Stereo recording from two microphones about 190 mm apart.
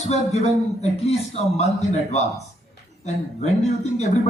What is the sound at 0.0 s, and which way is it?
Speech, 35° left (ahead or behind).